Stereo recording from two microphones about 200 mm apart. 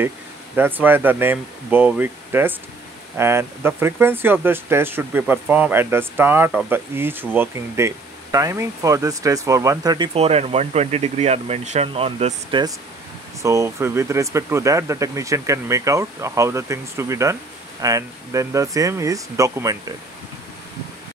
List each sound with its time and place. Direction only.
0.6 s speech: 10° right (ahead or behind)